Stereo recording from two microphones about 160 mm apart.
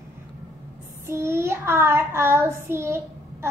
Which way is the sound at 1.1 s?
15° right (ahead or behind).